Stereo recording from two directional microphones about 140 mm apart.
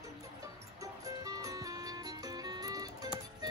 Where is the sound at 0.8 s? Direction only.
25° right (ahead or behind).